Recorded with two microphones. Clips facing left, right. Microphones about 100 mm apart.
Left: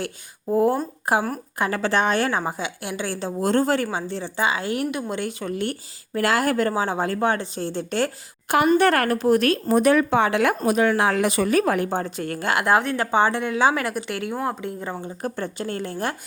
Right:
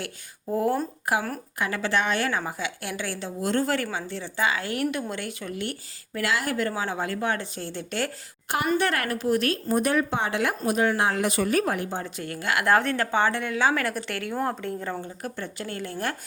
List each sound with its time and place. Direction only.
0.5 s a woman's voice: 25° left (ahead or behind)
5.5 s a woman's voice: 35° left (ahead or behind)
8.4 s a woman's voice: 65° left (ahead or behind)
8.8 s a woman's voice: 45° left (ahead or behind)
9.6 s speech: 90° left
11.8 s a woman's voice: 45° left (ahead or behind)
12.5 s speech: 15° left (ahead or behind)
15.2 s a woman's voice: 30° left (ahead or behind)